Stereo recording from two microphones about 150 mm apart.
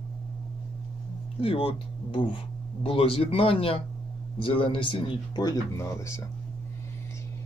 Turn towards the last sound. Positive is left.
turn(degrees=20)  # may be behind; listen again after turning